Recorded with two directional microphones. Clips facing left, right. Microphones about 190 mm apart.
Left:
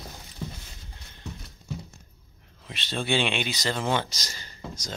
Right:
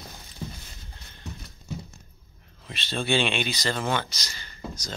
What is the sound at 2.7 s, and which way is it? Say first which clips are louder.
Speech: right 1 dB; 15° left (ahead or behind).